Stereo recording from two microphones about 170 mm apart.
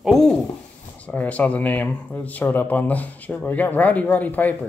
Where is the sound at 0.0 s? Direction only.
Centre (ahead or behind).